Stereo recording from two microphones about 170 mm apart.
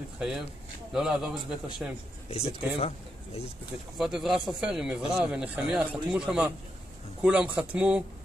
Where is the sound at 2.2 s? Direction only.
40° left (ahead or behind).